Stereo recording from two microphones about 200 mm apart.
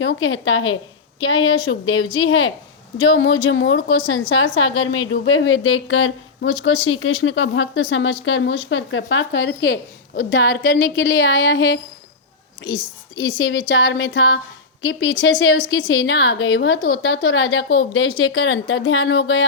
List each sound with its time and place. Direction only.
0.0 s a woman's voice: 75° left (ahead or behind)
2.1 s a woman's voice: 75° left (ahead or behind)
12.7 s speech: 20° left (ahead or behind)
13.7 s a woman's voice: 75° left (ahead or behind)